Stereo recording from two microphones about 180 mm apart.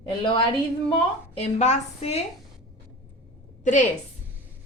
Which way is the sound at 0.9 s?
35° left (ahead or behind).